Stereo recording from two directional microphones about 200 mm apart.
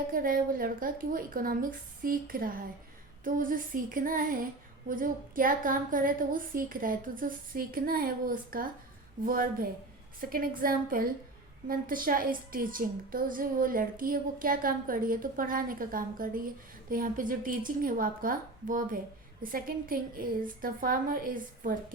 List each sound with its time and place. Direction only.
0.1 s a woman's voice: 45° right (ahead or behind)